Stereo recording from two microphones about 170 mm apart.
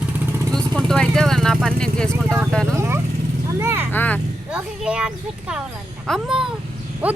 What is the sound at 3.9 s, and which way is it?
Speech, 10° left (ahead or behind).